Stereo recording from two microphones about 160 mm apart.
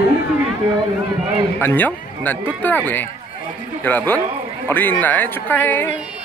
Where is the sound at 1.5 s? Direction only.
10° left (ahead or behind).